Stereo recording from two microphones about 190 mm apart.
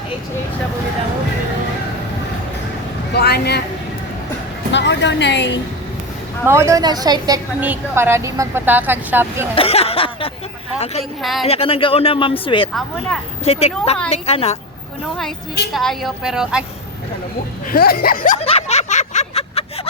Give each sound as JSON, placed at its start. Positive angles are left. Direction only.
{"t": 3.1, "sound": "speech", "side_deg": 55}
{"t": 4.7, "sound": "speech", "side_deg": 65}
{"t": 6.4, "sound": "speech", "side_deg": -15}
{"t": 9.6, "sound": "speech", "side_deg": 30}
{"t": 11.2, "sound": "a woman's voice", "side_deg": 0}
{"t": 11.4, "sound": "a woman's voice", "side_deg": 30}
{"t": 15.7, "sound": "a woman's voice", "side_deg": 0}
{"t": 17.7, "sound": "a sound", "side_deg": 50}